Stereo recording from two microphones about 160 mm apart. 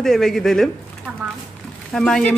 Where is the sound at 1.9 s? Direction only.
5° left (ahead or behind).